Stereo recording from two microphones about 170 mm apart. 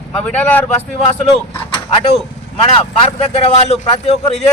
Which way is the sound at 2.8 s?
35° left (ahead or behind).